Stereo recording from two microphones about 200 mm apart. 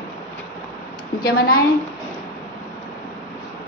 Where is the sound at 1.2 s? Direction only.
45° left (ahead or behind).